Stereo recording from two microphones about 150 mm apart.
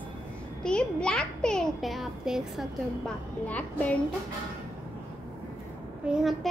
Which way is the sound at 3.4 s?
10° left (ahead or behind).